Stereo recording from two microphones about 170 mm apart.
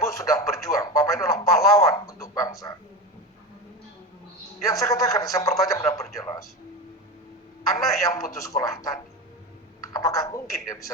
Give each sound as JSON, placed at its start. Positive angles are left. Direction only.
{"t": 0.0, "sound": "radio", "side_deg": 20}
{"t": 4.6, "sound": "a man's voice", "side_deg": 20}
{"t": 5.7, "sound": "radio", "side_deg": 20}
{"t": 6.1, "sound": "a sound", "side_deg": 20}
{"t": 7.8, "sound": "a man's voice", "side_deg": 20}